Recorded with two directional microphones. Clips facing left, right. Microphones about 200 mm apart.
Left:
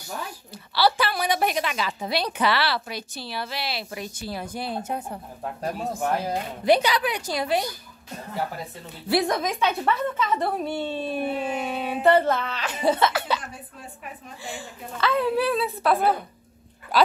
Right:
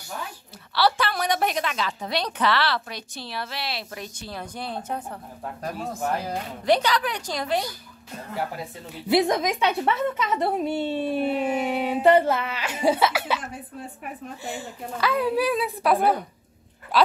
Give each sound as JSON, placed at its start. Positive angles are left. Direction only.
{"t": 0.7, "sound": "a woman's voice", "side_deg": 5}
{"t": 6.6, "sound": "a woman's voice", "side_deg": 10}
{"t": 9.0, "sound": "a woman's voice", "side_deg": -20}
{"t": 14.4, "sound": "a woman's voice", "side_deg": -20}
{"t": 16.9, "sound": "speech", "side_deg": 0}